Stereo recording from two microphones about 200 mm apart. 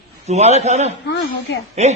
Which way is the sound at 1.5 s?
65° left (ahead or behind).